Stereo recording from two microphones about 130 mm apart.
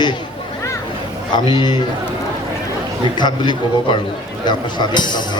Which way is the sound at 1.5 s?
35° left (ahead or behind).